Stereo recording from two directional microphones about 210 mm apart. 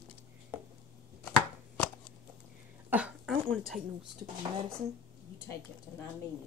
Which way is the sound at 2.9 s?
5° right (ahead or behind).